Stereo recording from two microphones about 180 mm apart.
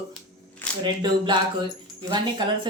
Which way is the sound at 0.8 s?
25° right (ahead or behind).